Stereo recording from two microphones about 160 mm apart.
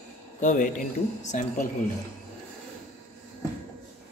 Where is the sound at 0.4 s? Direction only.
50° left (ahead or behind).